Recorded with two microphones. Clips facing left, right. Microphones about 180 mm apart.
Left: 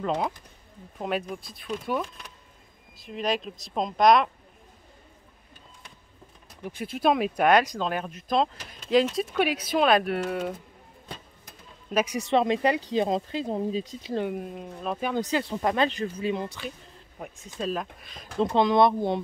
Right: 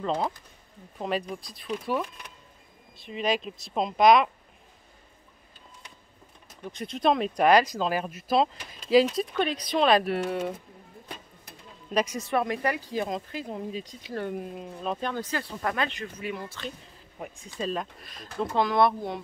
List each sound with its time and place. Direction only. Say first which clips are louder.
0.0 s speech: left 1 dB; 5° left (ahead or behind)
6.6 s speech: left 1 dB; 5° left (ahead or behind)
11.9 s speech: left 1 dB; 5° left (ahead or behind)
12.3 s speech: left 4 dB; 20° left (ahead or behind)
14.2 s speech: left 2 dB; centre (ahead or behind)
15.1 s speech: left 6 dB; 20° left (ahead or behind)
16.4 s speech: left 1 dB; 10° left (ahead or behind)
18.4 s speech: left 3 dB; 20° left (ahead or behind)